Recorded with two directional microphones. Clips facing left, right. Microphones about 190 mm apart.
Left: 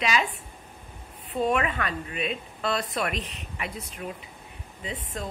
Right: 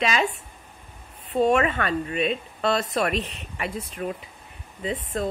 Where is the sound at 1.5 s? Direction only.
40° right (ahead or behind).